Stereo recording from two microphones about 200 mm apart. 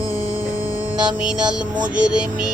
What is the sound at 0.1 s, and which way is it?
Music, 15° left (ahead or behind).